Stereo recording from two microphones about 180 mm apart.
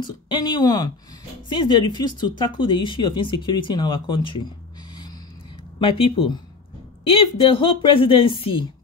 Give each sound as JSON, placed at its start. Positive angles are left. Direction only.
{"t": 0.0, "sound": "speech", "side_deg": 25}
{"t": 5.8, "sound": "speech", "side_deg": 30}